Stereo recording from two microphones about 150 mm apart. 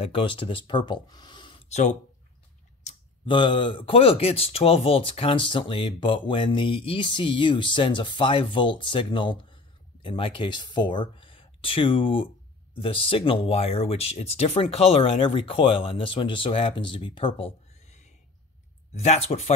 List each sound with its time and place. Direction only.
0.0 s speech: 35° left (ahead or behind)
1.7 s speech: 50° left (ahead or behind)
2.9 s a sound: 50° left (ahead or behind)
3.3 s speech: 30° left (ahead or behind)